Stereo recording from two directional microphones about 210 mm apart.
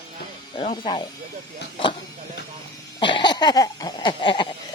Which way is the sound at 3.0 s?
20° left (ahead or behind).